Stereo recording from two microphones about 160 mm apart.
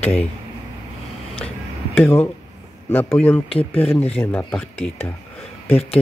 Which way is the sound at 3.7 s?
10° left (ahead or behind).